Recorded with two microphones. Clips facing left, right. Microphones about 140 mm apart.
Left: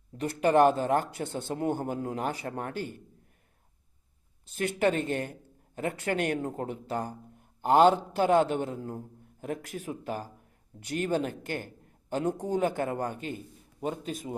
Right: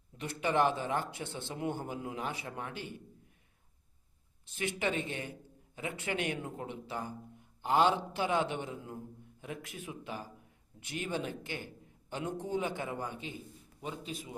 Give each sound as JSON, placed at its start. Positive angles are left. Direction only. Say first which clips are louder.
{"t": 0.2, "sound": "a man's voice", "louder": "left 8 dB", "side_deg": 45}
{"t": 4.5, "sound": "a man's voice", "louder": "left 7 dB", "side_deg": 45}